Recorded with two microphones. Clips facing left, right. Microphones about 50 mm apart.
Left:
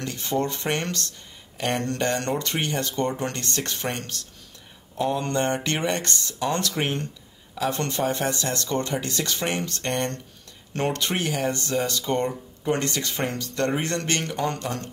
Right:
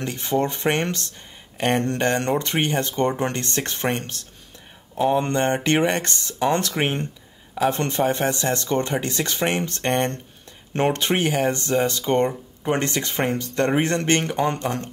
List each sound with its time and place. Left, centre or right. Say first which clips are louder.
0.0 s speech: right 3 dB; right